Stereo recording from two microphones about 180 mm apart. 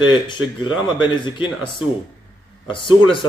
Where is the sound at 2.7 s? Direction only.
25° left (ahead or behind).